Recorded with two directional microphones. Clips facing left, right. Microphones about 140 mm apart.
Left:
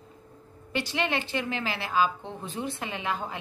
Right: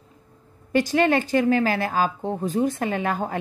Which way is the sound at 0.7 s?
45° right (ahead or behind).